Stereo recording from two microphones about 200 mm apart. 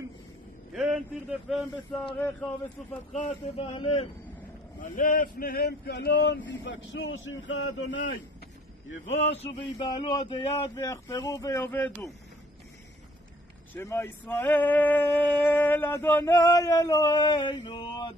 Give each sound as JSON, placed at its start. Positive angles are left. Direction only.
{"t": 0.7, "sound": "vehicle", "side_deg": 0}
{"t": 1.5, "sound": "speech", "side_deg": 0}
{"t": 3.1, "sound": "speech", "side_deg": 30}
{"t": 4.7, "sound": "a man's voice", "side_deg": 40}
{"t": 7.2, "sound": "a sound", "side_deg": 70}
{"t": 9.0, "sound": "male singing", "side_deg": 35}
{"t": 13.7, "sound": "male singing", "side_deg": 10}